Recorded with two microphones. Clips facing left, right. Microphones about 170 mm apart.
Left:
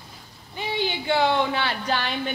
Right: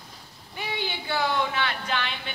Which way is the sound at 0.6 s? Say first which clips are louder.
Left 5 dB; 25° left (ahead or behind).